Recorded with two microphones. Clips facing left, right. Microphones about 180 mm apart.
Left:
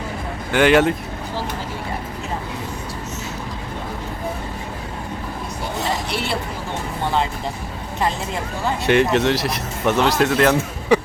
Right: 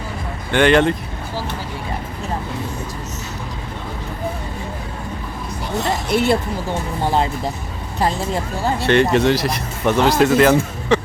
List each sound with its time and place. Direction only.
0.5 s speech: 5° left (ahead or behind)
6.1 s speech: 45° right (ahead or behind)
8.9 s speech: centre (ahead or behind)
10.9 s a sound: 15° left (ahead or behind)